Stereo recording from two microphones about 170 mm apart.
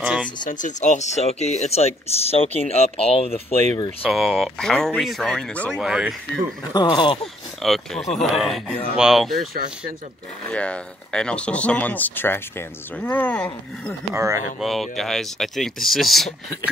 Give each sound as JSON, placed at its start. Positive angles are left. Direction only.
{"t": 0.0, "sound": "a sound", "side_deg": -5}
{"t": 0.5, "sound": "speech", "side_deg": 50}
{"t": 4.0, "sound": "speech", "side_deg": 0}
{"t": 6.7, "sound": "speech", "side_deg": 25}
{"t": 7.6, "sound": "speech", "side_deg": 0}
{"t": 10.5, "sound": "speech", "side_deg": 5}
{"t": 14.1, "sound": "speech", "side_deg": -15}
{"t": 14.6, "sound": "speech", "side_deg": 0}